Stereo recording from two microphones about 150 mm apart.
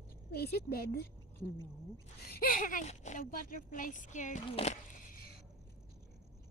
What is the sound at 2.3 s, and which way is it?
Speech, 70° left (ahead or behind).